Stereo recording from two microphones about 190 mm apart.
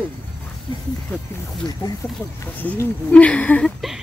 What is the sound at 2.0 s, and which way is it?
Speech, 10° left (ahead or behind).